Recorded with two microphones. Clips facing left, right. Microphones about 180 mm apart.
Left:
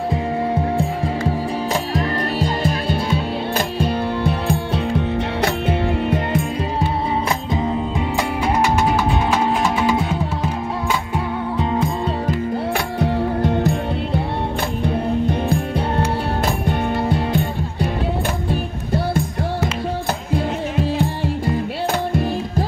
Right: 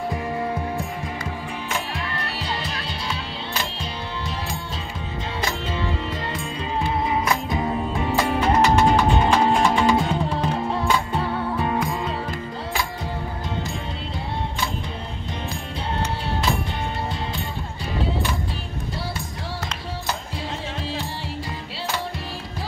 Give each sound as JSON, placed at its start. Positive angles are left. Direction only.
{"t": 1.7, "sound": "music", "side_deg": 45}
{"t": 8.2, "sound": "music", "side_deg": 10}
{"t": 12.7, "sound": "music", "side_deg": 65}
{"t": 16.4, "sound": "music", "side_deg": 55}